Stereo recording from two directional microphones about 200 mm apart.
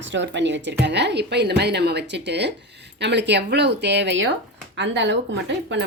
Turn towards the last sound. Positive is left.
turn(degrees=-60)  # may be behind; listen again after turning